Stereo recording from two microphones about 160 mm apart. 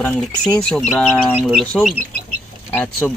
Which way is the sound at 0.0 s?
5° left (ahead or behind).